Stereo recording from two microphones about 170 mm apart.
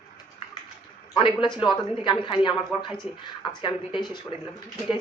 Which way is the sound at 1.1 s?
30° left (ahead or behind).